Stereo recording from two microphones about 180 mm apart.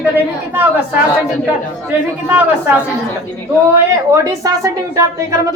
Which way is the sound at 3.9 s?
20° right (ahead or behind).